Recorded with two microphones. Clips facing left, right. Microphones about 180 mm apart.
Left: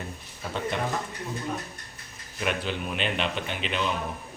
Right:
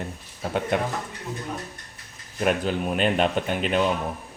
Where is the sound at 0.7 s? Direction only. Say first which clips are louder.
Right 6 dB; 55° right (ahead or behind).